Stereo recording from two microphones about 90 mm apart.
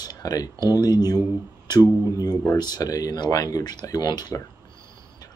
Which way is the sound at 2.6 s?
50° left (ahead or behind).